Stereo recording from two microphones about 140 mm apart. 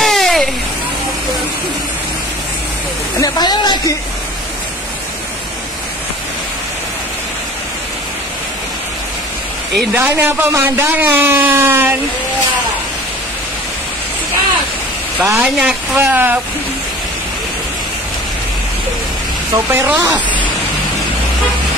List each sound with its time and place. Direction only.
0.0 s a sound: centre (ahead or behind)
3.2 s a sound: 30° left (ahead or behind)
9.9 s a man's voice: 15° right (ahead or behind)
15.1 s speech: 20° right (ahead or behind)
15.4 s speech: 5° right (ahead or behind)
16.0 s a man's voice: 15° right (ahead or behind)
19.5 s a man's voice: 15° right (ahead or behind)